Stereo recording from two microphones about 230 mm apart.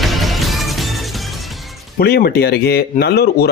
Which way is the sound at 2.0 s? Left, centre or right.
Left.